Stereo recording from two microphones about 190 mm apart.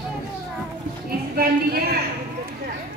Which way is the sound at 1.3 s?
50° right (ahead or behind).